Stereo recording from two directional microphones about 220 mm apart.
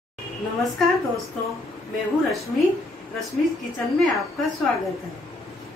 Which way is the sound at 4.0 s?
Centre (ahead or behind).